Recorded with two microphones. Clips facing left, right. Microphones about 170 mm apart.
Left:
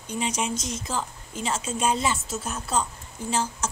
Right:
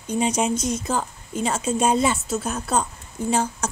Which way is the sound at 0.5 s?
55° right (ahead or behind).